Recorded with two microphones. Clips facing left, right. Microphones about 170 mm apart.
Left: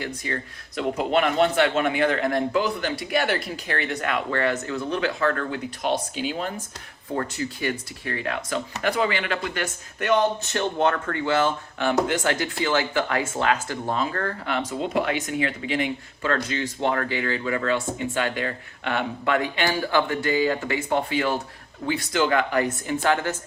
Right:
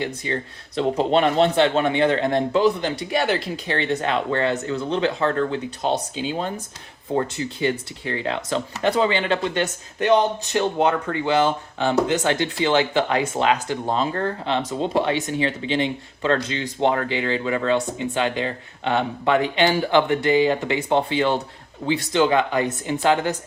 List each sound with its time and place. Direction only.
0.0 s speech: 25° right (ahead or behind)